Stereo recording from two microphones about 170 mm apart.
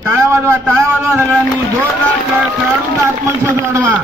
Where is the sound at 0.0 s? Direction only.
15° right (ahead or behind).